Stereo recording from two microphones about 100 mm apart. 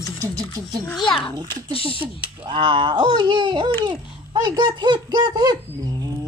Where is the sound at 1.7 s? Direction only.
65° left (ahead or behind).